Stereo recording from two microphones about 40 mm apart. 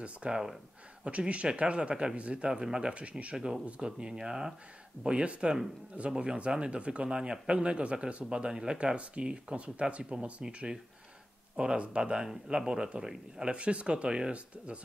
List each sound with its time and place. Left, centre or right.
0.0 s speech: right
2.9 s speech: right
3.3 s speech: centre
5.0 s speech: right
11.5 s speech: right